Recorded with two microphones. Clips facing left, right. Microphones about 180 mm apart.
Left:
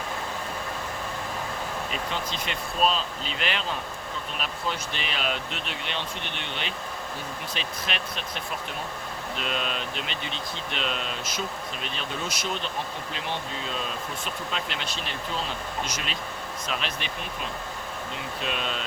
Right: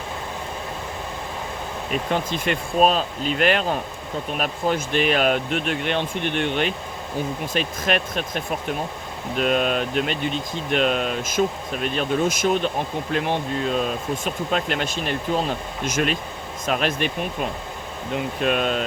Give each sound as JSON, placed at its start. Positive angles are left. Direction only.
{"t": 1.9, "sound": "speech", "side_deg": -55}